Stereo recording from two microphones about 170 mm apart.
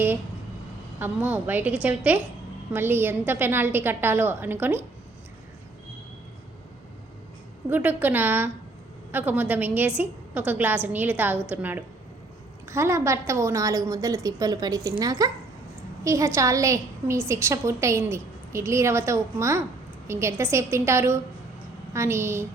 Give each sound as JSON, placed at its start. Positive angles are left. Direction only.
{"t": 0.9, "sound": "a woman's voice", "side_deg": -10}
{"t": 7.7, "sound": "a woman's voice", "side_deg": -10}